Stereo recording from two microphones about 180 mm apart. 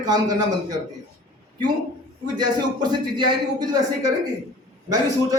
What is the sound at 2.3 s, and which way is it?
A man's voice, 25° right (ahead or behind).